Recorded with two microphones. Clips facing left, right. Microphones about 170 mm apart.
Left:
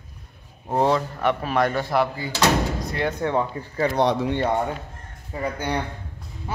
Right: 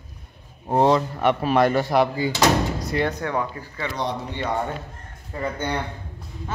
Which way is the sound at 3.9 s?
70° left (ahead or behind).